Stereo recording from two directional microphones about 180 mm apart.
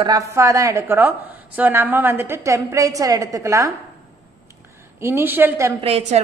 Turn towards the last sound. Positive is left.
turn(degrees=-35)  # may be behind; listen again after turning